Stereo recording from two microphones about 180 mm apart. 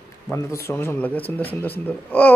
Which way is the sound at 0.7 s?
15° left (ahead or behind).